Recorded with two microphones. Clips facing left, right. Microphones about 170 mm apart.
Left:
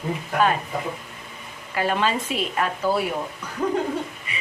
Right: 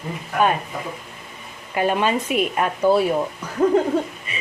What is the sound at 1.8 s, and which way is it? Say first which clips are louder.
A woman's voice: right 3 dB; 20° right (ahead or behind).